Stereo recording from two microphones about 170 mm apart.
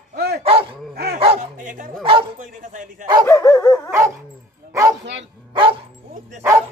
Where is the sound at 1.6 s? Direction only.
50° right (ahead or behind).